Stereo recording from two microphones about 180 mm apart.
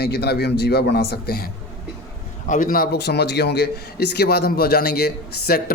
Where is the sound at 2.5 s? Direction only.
50° left (ahead or behind).